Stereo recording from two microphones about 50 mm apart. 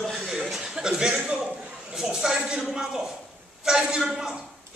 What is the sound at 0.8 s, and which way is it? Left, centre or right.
Speech, centre.